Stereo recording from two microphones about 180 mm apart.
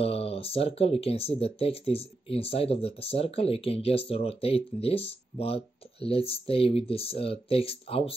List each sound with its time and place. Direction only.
0.0 s speech: 35° left (ahead or behind)